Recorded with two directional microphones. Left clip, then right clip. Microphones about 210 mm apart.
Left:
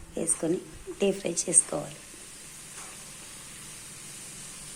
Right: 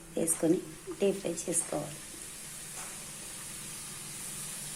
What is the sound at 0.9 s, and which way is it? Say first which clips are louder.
Speech: left 3 dB; 15° left (ahead or behind).